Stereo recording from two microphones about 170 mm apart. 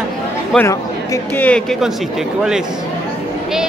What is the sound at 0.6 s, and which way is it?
Speech, 15° left (ahead or behind).